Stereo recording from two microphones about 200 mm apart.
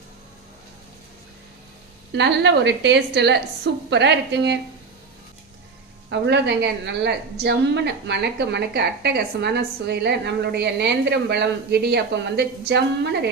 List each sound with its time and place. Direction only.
2.1 s a woman's voice: 60° right (ahead or behind)
6.1 s a woman's voice: 60° right (ahead or behind)